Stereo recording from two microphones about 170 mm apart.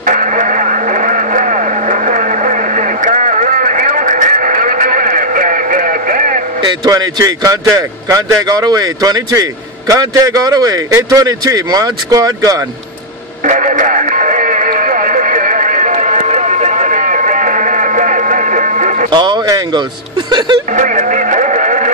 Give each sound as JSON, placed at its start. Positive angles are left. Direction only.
{"t": 0.0, "sound": "vehicle", "side_deg": -50}
{"t": 6.6, "sound": "a man's voice", "side_deg": -20}
{"t": 13.5, "sound": "radio", "side_deg": -50}
{"t": 19.1, "sound": "a man's voice", "side_deg": -25}
{"t": 20.7, "sound": "radio", "side_deg": -45}